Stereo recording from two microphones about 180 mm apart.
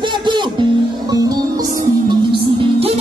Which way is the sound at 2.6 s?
30° right (ahead or behind).